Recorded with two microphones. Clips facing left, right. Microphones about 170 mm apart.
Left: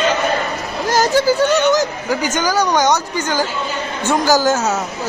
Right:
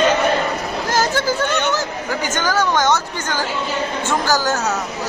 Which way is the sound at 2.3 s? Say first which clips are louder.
Left 1 dB; 15° left (ahead or behind).